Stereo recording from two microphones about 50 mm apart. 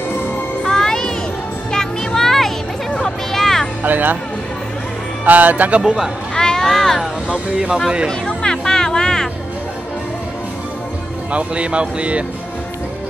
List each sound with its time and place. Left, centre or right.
0.7 s music: centre
3.8 s speech: right
5.2 s speech: right
5.8 s speech: centre
6.3 s a sound: centre
7.0 s speech: centre
8.1 s music: centre
11.3 s speech: right